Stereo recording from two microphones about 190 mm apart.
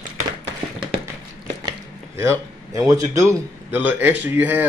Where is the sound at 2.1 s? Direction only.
15° right (ahead or behind).